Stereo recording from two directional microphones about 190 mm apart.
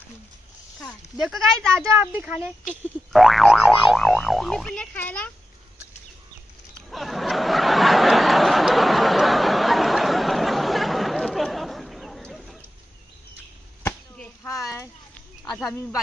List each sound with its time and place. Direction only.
0.7 s boing: 5° left (ahead or behind)
1.9 s speech: 10° right (ahead or behind)
2.7 s boing: centre (ahead or behind)
6.9 s a sound: centre (ahead or behind)
13.8 s chop: 10° left (ahead or behind)
14.5 s a sound: 15° left (ahead or behind)